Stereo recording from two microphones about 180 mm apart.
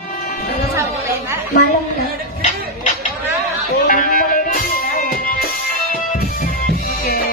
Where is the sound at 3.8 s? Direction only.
50° left (ahead or behind).